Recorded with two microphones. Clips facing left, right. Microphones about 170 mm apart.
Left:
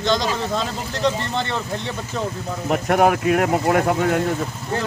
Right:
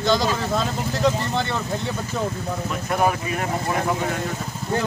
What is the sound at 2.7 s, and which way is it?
Speech, 70° left (ahead or behind).